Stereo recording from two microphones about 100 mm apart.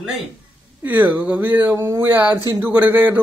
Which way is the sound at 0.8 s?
20° right (ahead or behind).